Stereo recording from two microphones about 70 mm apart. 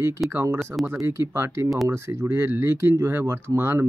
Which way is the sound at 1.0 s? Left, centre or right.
Right.